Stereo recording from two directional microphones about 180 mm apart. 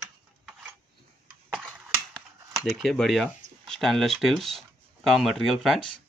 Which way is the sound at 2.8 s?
Centre (ahead or behind).